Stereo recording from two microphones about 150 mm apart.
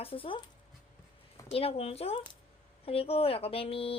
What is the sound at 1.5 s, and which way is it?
A woman's voice, 40° left (ahead or behind).